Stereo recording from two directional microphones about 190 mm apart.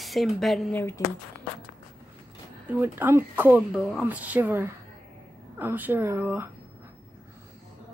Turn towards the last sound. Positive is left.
turn(degrees=-10)  # may be behind; listen again after turning